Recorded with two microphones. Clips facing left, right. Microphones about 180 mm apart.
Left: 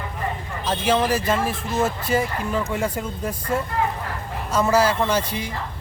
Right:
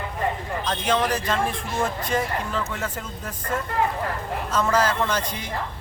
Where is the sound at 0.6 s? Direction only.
5° left (ahead or behind).